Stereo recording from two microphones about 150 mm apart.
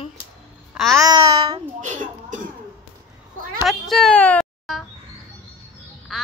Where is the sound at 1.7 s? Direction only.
55° right (ahead or behind).